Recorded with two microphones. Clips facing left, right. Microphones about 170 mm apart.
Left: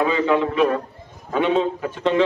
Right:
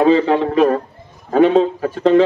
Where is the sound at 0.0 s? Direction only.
35° right (ahead or behind).